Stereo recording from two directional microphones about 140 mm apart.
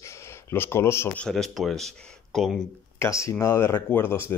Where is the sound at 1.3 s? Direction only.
Centre (ahead or behind).